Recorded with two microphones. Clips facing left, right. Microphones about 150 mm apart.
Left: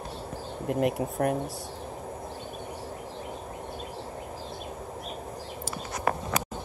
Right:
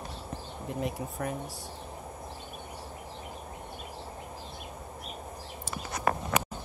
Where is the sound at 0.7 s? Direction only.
65° left (ahead or behind).